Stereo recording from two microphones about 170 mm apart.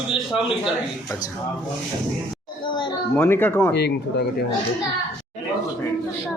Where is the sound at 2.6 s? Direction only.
30° left (ahead or behind).